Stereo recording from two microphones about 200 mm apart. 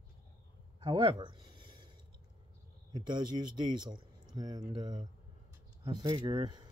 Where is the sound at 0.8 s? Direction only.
25° right (ahead or behind).